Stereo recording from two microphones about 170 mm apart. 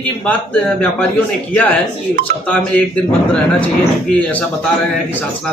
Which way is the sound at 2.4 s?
5° left (ahead or behind).